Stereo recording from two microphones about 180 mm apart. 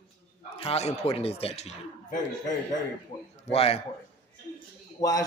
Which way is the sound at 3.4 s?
35° left (ahead or behind).